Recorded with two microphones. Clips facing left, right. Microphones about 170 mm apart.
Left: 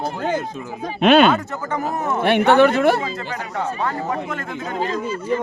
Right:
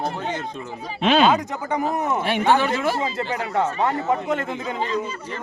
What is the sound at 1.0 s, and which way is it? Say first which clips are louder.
Speech: left 4 dB; 65° left (ahead or behind).